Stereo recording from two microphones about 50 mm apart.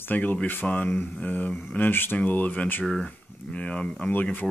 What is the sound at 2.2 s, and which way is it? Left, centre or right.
Speech, left.